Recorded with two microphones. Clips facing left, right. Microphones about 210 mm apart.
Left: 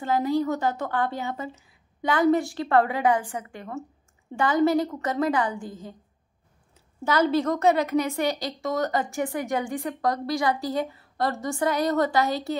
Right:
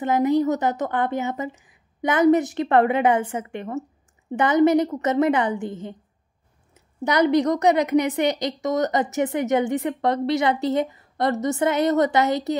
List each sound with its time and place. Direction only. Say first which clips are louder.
0.0 s a woman's voice: right 5 dB; 20° right (ahead or behind)
7.1 s a woman's voice: right 4 dB; 15° right (ahead or behind)